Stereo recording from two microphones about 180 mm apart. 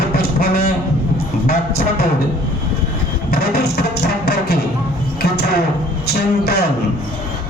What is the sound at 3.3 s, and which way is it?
Music, 60° left (ahead or behind).